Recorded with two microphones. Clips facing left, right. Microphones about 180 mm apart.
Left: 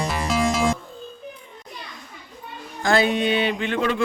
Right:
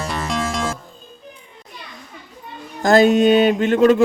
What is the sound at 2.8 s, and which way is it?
Mantra, 40° right (ahead or behind).